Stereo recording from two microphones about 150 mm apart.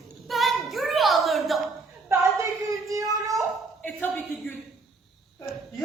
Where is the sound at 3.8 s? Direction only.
10° left (ahead or behind).